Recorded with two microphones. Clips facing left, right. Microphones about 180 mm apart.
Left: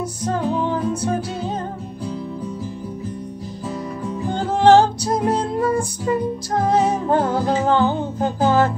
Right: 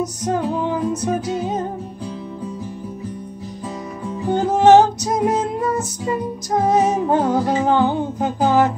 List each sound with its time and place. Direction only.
0.0 s music: 15° right (ahead or behind)
4.3 s music: 20° right (ahead or behind)
6.5 s music: 15° right (ahead or behind)